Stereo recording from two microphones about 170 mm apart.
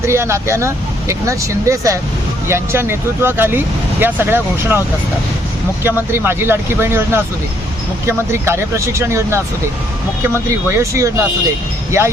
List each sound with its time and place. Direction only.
0.0 s speech: 15° right (ahead or behind)
5.8 s speech: 15° right (ahead or behind)